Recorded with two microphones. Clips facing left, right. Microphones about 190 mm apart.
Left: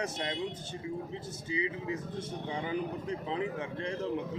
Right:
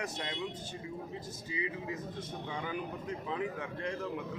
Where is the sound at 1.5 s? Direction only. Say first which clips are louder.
Left 4 dB; 25° left (ahead or behind).